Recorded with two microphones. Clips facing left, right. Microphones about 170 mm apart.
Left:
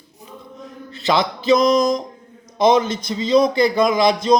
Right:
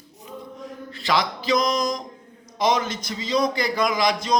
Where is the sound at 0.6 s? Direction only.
25° left (ahead or behind).